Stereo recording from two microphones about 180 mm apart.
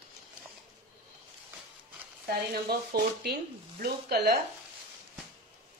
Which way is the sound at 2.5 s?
60° right (ahead or behind).